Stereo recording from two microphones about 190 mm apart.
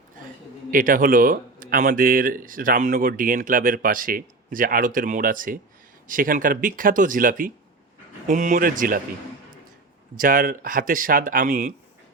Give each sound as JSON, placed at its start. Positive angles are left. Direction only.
{"t": 0.7, "sound": "speech", "side_deg": -45}
{"t": 10.2, "sound": "speech", "side_deg": -45}